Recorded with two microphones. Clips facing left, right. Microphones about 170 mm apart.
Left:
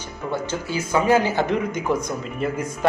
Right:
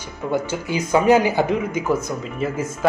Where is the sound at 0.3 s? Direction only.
15° right (ahead or behind).